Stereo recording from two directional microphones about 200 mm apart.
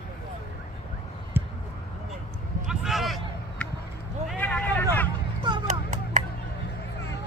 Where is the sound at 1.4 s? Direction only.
10° right (ahead or behind).